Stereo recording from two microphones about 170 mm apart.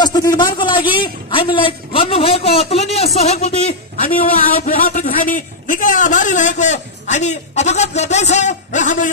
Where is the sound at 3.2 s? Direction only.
40° left (ahead or behind).